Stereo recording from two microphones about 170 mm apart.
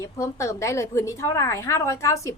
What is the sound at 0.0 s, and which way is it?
A woman's voice, 15° left (ahead or behind).